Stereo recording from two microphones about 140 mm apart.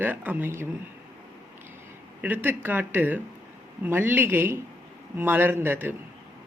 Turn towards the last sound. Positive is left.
turn(degrees=-15)  # may be behind; listen again after turning